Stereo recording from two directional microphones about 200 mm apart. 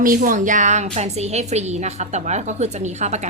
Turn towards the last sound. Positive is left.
turn(degrees=-35)  # may be behind; listen again after turning